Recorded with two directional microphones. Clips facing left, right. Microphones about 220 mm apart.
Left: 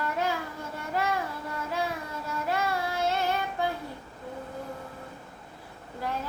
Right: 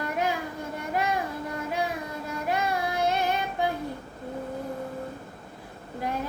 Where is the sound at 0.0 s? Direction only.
15° right (ahead or behind).